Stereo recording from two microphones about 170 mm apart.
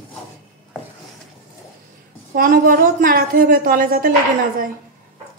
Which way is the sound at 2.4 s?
60° right (ahead or behind).